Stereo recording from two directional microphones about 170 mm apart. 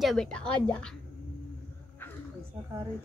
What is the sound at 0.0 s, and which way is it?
Speech, centre (ahead or behind).